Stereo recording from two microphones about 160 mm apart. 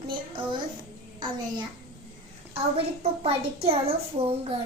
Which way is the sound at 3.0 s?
40° right (ahead or behind).